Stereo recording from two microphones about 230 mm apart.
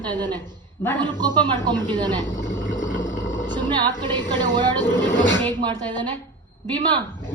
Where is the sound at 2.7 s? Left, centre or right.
Left.